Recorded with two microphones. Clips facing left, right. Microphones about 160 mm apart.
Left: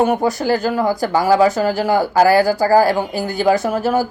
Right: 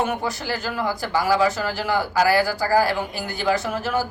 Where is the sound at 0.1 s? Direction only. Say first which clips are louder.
Left 10 dB; 45° left (ahead or behind).